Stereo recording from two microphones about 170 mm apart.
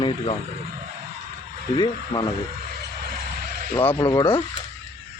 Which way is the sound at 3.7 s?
10° left (ahead or behind).